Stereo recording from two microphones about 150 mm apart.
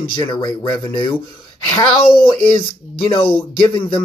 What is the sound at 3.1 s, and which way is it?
Speech, 35° left (ahead or behind).